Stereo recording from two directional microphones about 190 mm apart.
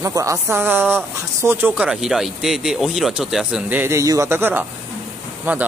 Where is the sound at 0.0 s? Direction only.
15° right (ahead or behind).